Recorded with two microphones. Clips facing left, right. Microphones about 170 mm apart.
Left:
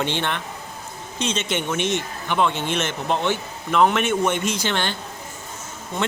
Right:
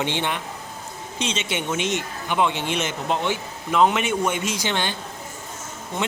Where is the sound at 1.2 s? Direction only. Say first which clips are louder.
Left 2 dB; 50° left (ahead or behind).